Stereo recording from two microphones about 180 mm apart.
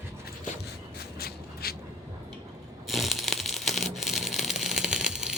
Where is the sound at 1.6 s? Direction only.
60° left (ahead or behind).